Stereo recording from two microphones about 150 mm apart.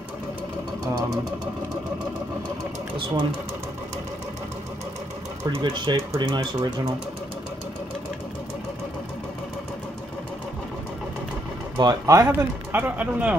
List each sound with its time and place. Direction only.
5.5 s speech: 30° right (ahead or behind)
11.8 s speech: 25° right (ahead or behind); by 13.4 s 10° right (ahead or behind)